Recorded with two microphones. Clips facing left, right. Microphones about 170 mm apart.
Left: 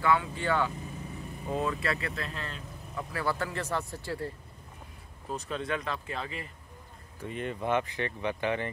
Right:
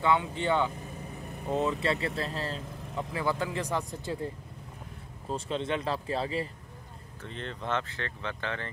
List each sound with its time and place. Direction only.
0.0 s speech: 20° right (ahead or behind)
3.1 s speech: 20° right (ahead or behind)
5.3 s speech: 25° right (ahead or behind)
7.2 s speech: 10° left (ahead or behind)